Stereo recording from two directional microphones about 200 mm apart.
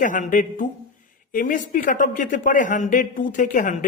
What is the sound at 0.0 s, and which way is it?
A man's voice, 40° left (ahead or behind).